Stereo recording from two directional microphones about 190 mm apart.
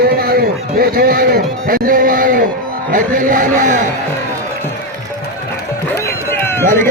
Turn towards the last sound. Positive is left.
turn(degrees=10)  # may be behind; listen again after turning